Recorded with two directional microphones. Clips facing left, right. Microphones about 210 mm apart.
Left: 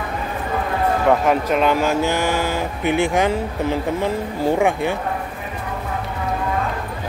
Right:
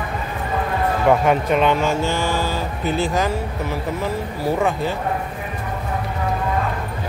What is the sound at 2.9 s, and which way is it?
Speech, 20° left (ahead or behind).